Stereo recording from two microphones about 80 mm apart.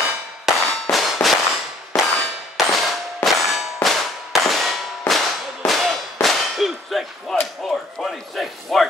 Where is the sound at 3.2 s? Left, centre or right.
Centre.